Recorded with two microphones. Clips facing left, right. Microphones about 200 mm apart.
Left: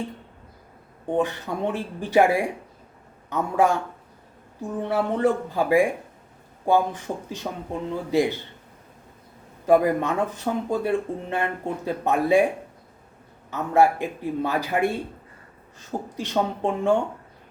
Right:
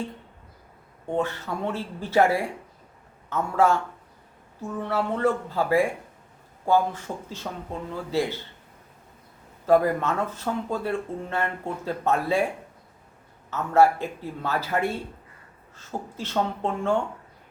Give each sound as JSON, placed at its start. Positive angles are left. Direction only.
{"t": 1.0, "sound": "speech", "side_deg": 15}
{"t": 9.6, "sound": "speech", "side_deg": 15}
{"t": 13.5, "sound": "speech", "side_deg": 15}